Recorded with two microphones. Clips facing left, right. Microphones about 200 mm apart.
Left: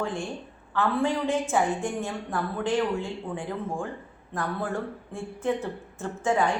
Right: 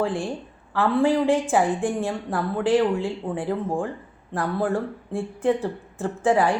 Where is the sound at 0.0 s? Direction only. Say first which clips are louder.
Right 5 dB; 35° right (ahead or behind).